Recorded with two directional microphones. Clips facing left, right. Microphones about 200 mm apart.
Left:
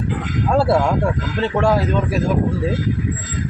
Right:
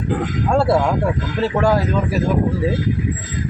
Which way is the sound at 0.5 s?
Centre (ahead or behind).